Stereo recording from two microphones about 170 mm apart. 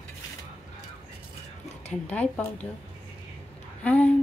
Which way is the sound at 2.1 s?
10° left (ahead or behind).